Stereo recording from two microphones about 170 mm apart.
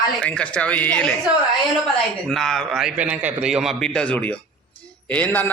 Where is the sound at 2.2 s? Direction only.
Centre (ahead or behind).